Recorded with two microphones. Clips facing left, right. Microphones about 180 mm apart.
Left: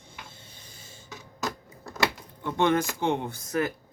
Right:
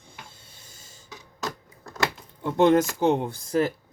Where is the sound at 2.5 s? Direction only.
40° right (ahead or behind).